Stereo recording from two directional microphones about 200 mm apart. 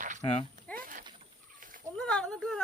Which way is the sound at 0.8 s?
40° right (ahead or behind).